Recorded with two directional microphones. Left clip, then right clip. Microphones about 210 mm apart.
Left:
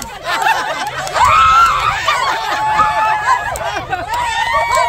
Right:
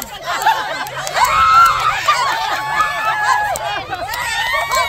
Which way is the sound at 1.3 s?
50° left (ahead or behind).